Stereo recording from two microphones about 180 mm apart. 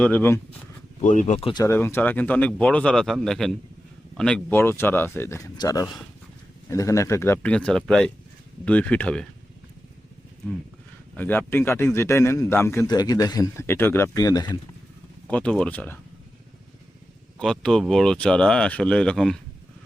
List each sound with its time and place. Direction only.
0.0 s a man's voice: 10° left (ahead or behind)
1.0 s speech: 45° left (ahead or behind)
1.6 s a man's voice: 15° left (ahead or behind)
11.2 s a man's voice: 10° left (ahead or behind)
15.3 s a man's voice: 5° left (ahead or behind)
17.4 s speech: 5° left (ahead or behind)